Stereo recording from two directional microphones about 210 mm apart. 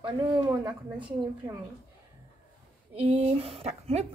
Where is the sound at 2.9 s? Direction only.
30° right (ahead or behind).